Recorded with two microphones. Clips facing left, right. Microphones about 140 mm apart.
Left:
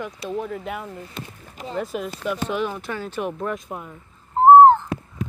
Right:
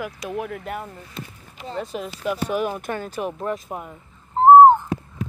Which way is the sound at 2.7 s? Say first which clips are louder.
Right 1 dB; 50° right (ahead or behind).